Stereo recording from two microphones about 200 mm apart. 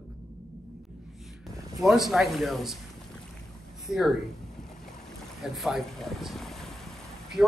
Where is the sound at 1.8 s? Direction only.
Centre (ahead or behind).